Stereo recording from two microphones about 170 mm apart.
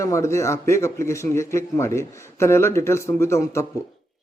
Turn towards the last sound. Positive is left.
turn(degrees=15)  # may be behind; listen again after turning